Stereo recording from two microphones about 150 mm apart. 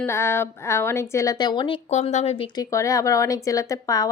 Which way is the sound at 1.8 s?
50° left (ahead or behind).